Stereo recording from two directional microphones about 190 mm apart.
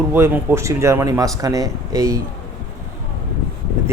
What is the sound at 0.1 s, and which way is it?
Speech, 15° right (ahead or behind).